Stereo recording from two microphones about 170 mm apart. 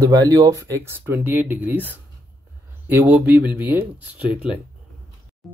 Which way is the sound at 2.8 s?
10° right (ahead or behind).